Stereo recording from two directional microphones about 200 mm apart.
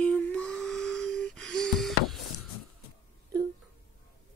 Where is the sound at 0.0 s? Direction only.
5° left (ahead or behind).